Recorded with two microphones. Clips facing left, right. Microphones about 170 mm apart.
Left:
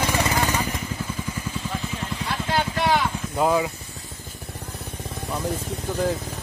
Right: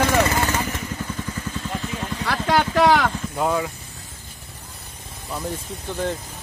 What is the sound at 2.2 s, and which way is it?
Vehicle, 90° right.